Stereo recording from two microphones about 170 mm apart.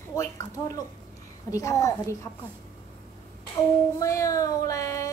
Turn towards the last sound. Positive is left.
turn(degrees=20)  # may be behind; listen again after turning